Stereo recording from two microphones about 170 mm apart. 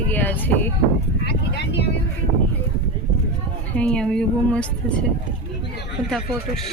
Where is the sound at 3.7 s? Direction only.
5° left (ahead or behind).